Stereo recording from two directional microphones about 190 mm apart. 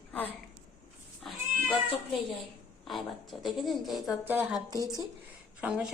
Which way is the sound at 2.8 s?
Centre (ahead or behind).